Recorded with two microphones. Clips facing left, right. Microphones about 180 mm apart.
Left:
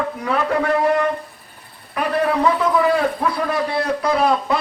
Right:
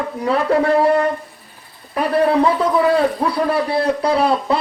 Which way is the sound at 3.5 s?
30° right (ahead or behind).